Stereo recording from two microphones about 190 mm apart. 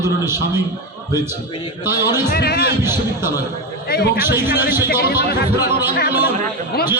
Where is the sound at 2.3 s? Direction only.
55° left (ahead or behind).